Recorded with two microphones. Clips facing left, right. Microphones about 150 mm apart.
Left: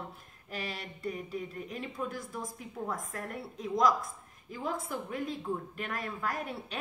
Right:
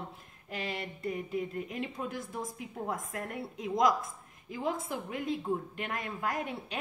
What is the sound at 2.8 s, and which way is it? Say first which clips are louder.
Speech: right 1 dB; 20° right (ahead or behind).